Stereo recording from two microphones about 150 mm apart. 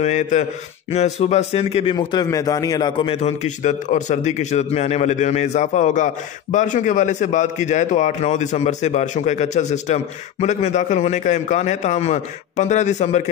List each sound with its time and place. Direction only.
0.0 s speech: 50° left (ahead or behind)
2.0 s a man's voice: 25° left (ahead or behind)
3.1 s speech: 45° left (ahead or behind)